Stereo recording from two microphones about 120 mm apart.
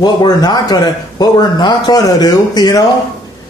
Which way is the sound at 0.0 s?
35° left (ahead or behind).